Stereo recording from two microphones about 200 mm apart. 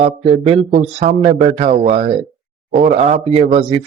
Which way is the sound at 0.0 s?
35° right (ahead or behind).